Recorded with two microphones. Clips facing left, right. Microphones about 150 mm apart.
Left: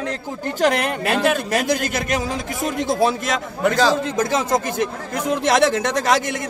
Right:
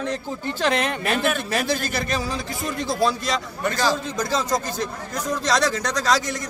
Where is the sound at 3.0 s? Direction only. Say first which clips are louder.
Left 1 dB; 50° left (ahead or behind).